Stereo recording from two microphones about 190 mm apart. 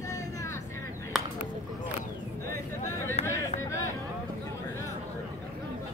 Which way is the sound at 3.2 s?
35° left (ahead or behind).